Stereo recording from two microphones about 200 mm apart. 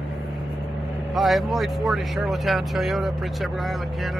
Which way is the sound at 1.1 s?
Centre (ahead or behind).